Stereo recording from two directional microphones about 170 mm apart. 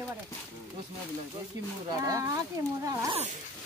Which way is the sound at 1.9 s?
20° right (ahead or behind).